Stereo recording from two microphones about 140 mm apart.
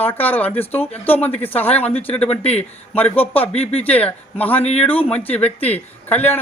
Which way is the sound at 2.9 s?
10° left (ahead or behind).